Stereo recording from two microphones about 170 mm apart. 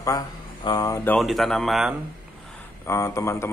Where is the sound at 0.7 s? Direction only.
20° left (ahead or behind).